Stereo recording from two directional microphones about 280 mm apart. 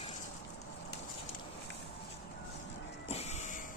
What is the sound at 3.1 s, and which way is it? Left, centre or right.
Vehicle, left.